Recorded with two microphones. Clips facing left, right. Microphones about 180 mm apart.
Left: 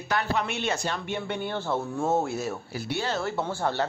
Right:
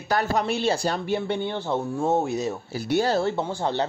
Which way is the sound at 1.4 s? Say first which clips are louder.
Right 3 dB; 15° right (ahead or behind).